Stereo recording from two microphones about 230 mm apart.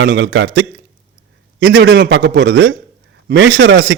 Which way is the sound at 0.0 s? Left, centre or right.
Right.